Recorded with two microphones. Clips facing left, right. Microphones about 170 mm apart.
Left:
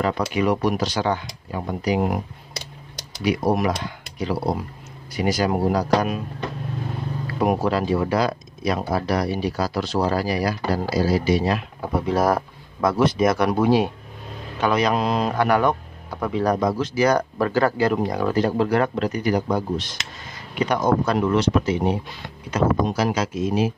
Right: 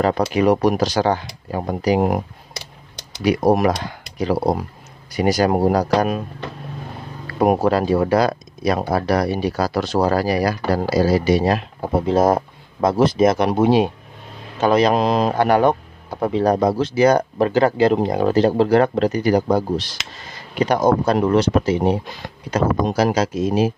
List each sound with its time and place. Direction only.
0.2 s speech: 40° right (ahead or behind)
3.3 s speech: 40° right (ahead or behind)
7.3 s speech: 45° right (ahead or behind)
8.7 s speech: 65° right (ahead or behind)
11.3 s speech: 40° right (ahead or behind)
11.8 s speech: 25° right (ahead or behind)
14.6 s speech: 35° right (ahead or behind)